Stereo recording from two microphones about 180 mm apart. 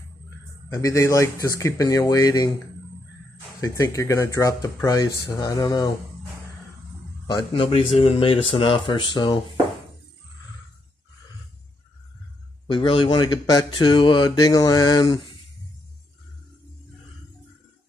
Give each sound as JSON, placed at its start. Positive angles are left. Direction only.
{"t": 0.7, "sound": "speech", "side_deg": 15}
{"t": 3.6, "sound": "speech", "side_deg": 15}
{"t": 7.2, "sound": "speech", "side_deg": 30}
{"t": 12.7, "sound": "speech", "side_deg": 30}